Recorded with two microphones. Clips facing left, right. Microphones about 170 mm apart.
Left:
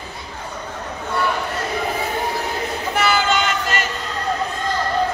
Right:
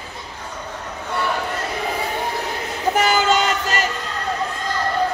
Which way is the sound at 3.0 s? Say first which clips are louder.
Right 1 dB; 40° right (ahead or behind).